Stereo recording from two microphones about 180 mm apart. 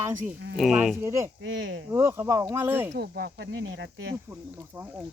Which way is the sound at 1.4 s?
90° right.